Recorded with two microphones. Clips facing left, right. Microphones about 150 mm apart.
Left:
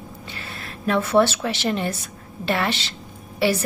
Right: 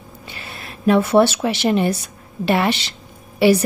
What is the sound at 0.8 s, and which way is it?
Speech, 15° right (ahead or behind).